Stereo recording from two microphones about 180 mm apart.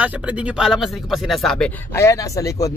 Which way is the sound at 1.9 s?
15° left (ahead or behind).